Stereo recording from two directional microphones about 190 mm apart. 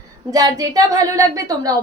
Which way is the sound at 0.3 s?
20° right (ahead or behind).